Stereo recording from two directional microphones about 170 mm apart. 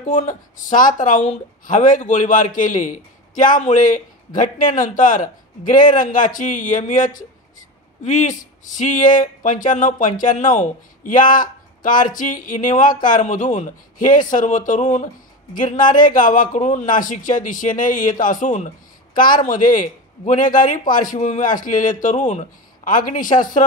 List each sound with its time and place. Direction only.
0.3 s speech: 50° left (ahead or behind)